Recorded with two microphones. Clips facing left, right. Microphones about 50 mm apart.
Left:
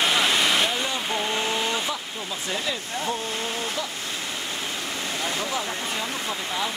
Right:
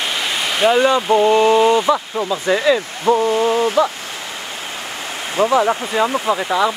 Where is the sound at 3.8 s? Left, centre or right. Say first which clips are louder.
Right 15 dB; right.